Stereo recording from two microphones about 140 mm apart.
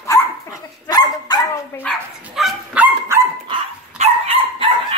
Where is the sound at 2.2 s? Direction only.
5° right (ahead or behind).